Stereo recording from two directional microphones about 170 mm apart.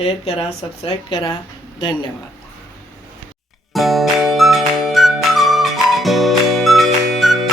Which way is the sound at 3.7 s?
Centre (ahead or behind).